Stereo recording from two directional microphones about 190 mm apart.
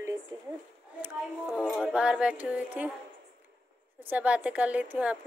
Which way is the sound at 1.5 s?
5° left (ahead or behind).